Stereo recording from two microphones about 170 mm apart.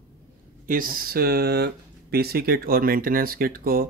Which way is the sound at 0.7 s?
55° right (ahead or behind).